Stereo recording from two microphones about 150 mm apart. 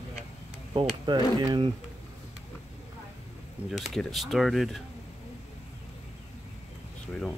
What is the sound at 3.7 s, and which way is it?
Speech, centre (ahead or behind).